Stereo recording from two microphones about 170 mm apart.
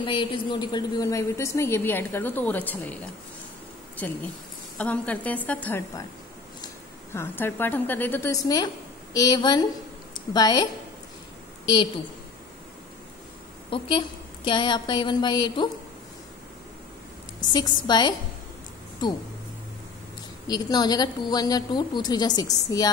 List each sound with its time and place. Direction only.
0.0 s a woman's voice: 30° left (ahead or behind); by 3.0 s 10° left (ahead or behind)
4.7 s a woman's voice: 10° left (ahead or behind)
7.2 s a woman's voice: 15° left (ahead or behind)
13.7 s a woman's voice: 30° left (ahead or behind)
17.5 s a woman's voice: 25° left (ahead or behind)
20.4 s a woman's voice: 25° left (ahead or behind)